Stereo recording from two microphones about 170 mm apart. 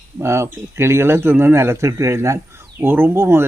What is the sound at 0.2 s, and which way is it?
Speech, 15° right (ahead or behind).